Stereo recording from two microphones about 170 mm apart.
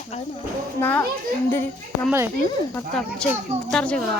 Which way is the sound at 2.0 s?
15° right (ahead or behind).